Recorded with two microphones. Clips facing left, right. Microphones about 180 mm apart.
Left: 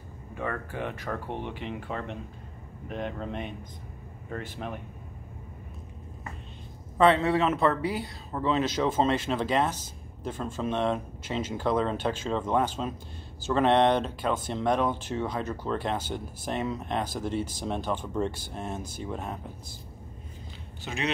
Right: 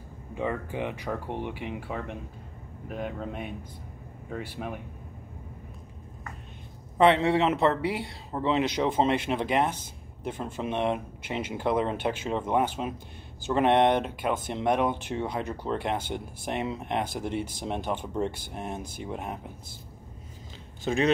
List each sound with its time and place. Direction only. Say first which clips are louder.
0.3 s speech: right 3 dB; 15° right (ahead or behind)
7.0 s speech: right 1 dB; 25° right (ahead or behind)
20.9 s speech: right 9 dB; 35° right (ahead or behind)